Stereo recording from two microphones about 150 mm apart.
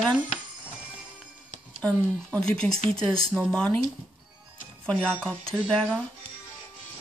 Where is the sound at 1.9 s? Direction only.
20° right (ahead or behind).